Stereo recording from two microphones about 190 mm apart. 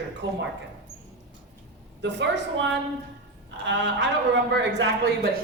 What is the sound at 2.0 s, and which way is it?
Speech, 65° right (ahead or behind).